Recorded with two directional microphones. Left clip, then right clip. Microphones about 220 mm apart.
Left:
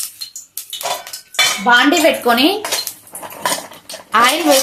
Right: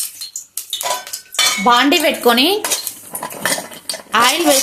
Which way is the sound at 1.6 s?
40° right (ahead or behind).